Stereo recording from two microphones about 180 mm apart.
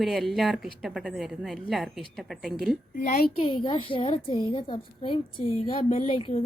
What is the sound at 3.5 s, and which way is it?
A woman's voice, 30° left (ahead or behind).